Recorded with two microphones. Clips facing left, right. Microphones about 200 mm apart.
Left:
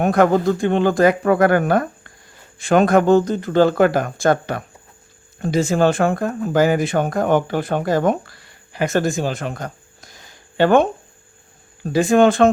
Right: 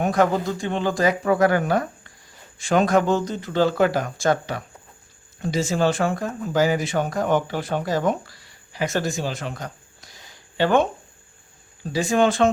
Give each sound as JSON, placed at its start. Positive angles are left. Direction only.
{"t": 0.0, "sound": "speech", "side_deg": 60}